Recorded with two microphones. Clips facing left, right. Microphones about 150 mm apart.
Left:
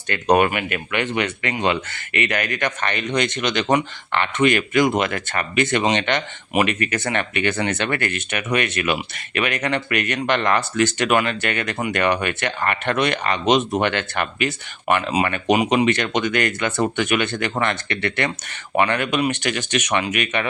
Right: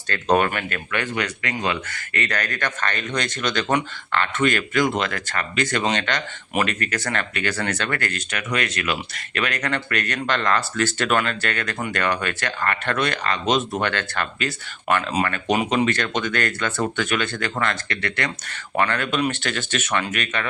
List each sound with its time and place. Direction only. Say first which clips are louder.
0.1 s speech: left 3 dB; 15° left (ahead or behind)